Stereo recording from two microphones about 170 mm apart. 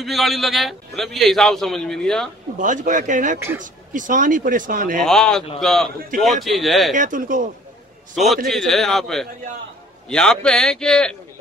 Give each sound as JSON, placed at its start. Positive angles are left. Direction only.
{"t": 0.0, "sound": "a man's voice", "side_deg": 0}
{"t": 2.6, "sound": "speech", "side_deg": -50}
{"t": 3.3, "sound": "speech", "side_deg": -15}
{"t": 3.6, "sound": "speech", "side_deg": -50}
{"t": 5.0, "sound": "a man's voice", "side_deg": 5}
{"t": 7.0, "sound": "speech", "side_deg": -50}
{"t": 8.5, "sound": "a man's voice", "side_deg": 0}